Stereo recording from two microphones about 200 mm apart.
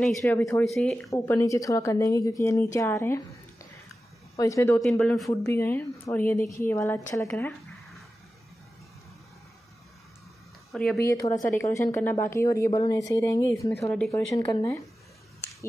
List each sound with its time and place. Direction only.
0.0 s a man's voice: centre (ahead or behind)
1.1 s speech: 15° left (ahead or behind)
4.4 s speech: 15° left (ahead or behind)
4.7 s a man's voice: centre (ahead or behind)
10.7 s a woman's voice: 5° left (ahead or behind)
11.2 s a woman's voice: 25° left (ahead or behind)
11.7 s a man's voice: 10° left (ahead or behind)
14.3 s speech: 15° left (ahead or behind)